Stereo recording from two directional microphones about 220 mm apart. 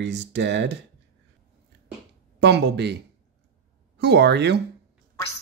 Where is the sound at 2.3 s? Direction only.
50° right (ahead or behind).